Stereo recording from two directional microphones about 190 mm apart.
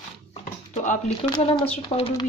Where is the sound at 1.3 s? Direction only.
30° left (ahead or behind).